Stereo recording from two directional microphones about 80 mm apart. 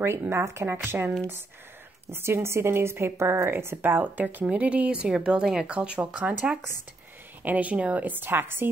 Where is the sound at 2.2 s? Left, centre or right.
Right.